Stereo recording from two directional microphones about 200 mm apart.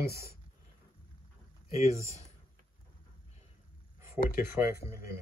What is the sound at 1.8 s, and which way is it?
Speech, 15° right (ahead or behind).